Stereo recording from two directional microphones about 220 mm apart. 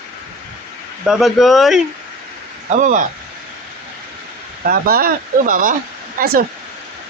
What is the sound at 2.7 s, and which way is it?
Speech, 35° right (ahead or behind).